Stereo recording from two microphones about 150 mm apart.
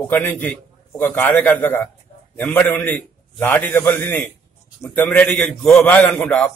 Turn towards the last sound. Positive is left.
turn(degrees=5)  # may be behind; listen again after turning